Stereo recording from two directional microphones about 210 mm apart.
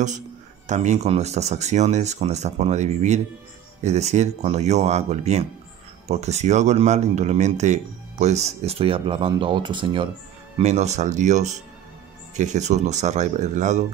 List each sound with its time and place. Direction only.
0.7 s speech: 35° right (ahead or behind)